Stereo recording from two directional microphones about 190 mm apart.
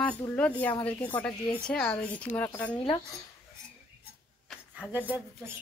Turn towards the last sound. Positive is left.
turn(degrees=-10)  # may be behind; listen again after turning